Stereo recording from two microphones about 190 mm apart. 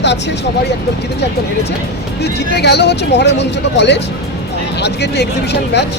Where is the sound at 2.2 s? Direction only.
60° left (ahead or behind).